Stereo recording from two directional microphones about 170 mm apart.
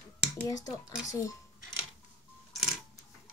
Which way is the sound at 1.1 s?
20° left (ahead or behind).